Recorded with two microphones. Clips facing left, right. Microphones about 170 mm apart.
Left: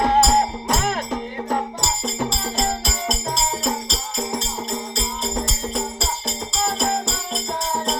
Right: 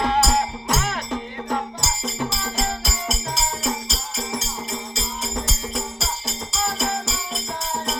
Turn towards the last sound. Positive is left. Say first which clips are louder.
# left 2 dB
turn(degrees=0)  # may be behind; listen again after turning